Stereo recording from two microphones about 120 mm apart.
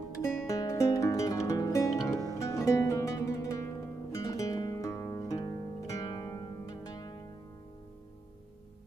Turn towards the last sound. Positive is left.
turn(degrees=30)  # may be behind; listen again after turning